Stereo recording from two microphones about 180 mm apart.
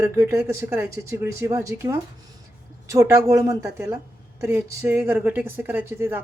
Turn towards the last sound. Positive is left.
turn(degrees=-15)  # may be behind; listen again after turning